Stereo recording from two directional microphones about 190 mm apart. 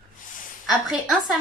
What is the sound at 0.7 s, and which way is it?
Speech, centre (ahead or behind).